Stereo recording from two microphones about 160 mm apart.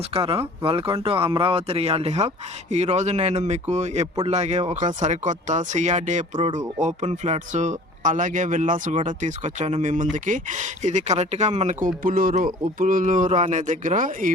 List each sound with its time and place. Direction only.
0.1 s speech: 35° right (ahead or behind); by 14.3 s 55° right (ahead or behind)